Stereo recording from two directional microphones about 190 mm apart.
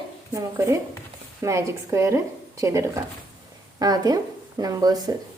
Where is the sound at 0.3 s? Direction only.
15° right (ahead or behind).